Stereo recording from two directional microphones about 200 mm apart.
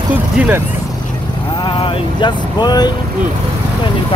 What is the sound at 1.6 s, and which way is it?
Vehicle, 25° left (ahead or behind).